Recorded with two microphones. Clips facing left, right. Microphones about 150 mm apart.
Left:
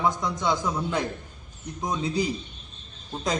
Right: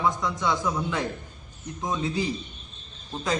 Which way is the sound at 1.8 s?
20° left (ahead or behind).